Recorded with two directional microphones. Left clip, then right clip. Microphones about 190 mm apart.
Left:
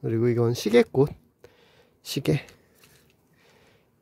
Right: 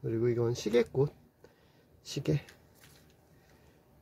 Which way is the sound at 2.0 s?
45° left (ahead or behind).